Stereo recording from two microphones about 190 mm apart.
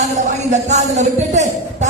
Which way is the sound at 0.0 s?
40° right (ahead or behind).